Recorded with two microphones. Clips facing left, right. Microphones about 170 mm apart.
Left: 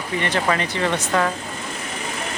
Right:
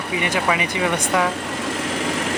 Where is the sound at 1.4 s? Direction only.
90° right.